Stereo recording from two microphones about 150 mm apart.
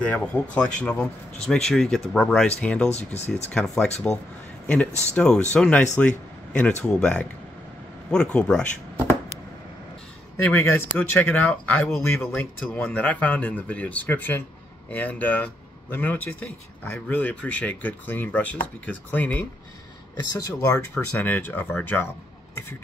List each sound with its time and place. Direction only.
0.0 s speech: 10° left (ahead or behind)
2.9 s speech: 45° left (ahead or behind)
4.1 s a man's voice: 5° left (ahead or behind)
10.3 s speech: 15° left (ahead or behind)
20.3 s speech: 20° left (ahead or behind)